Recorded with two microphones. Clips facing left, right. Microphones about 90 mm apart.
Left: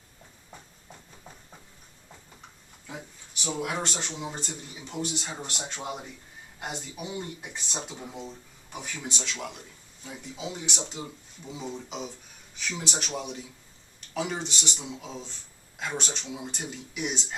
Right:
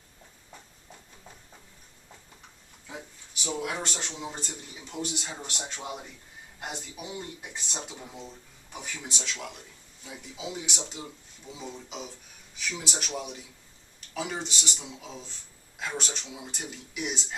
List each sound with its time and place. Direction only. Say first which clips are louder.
3.4 s speech: left 1 dB; 5° left (ahead or behind)
5.7 s speech: left 3 dB; 20° left (ahead or behind)
6.6 s speech: left 2 dB; centre (ahead or behind)